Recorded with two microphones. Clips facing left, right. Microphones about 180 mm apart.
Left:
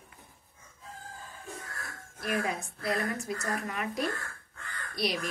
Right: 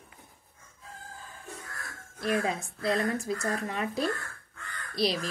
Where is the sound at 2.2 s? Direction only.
25° right (ahead or behind).